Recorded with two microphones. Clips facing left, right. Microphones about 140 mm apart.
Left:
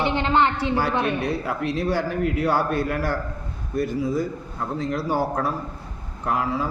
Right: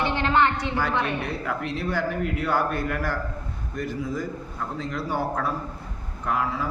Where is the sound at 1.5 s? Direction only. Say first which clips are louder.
Left 4 dB; 30° left (ahead or behind).